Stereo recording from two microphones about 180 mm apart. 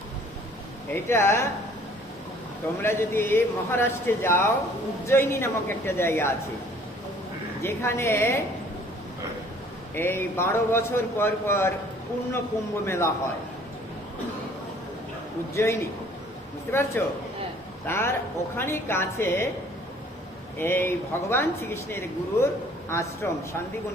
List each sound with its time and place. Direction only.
0.9 s speech: 15° left (ahead or behind)
2.8 s speech: 15° left (ahead or behind)
7.6 s speech: 15° left (ahead or behind)
9.9 s speech: 10° left (ahead or behind)
12.8 s speech: 15° left (ahead or behind)
15.5 s speech: 15° left (ahead or behind)
17.0 s speech: 10° left (ahead or behind)
20.6 s speech: 10° left (ahead or behind)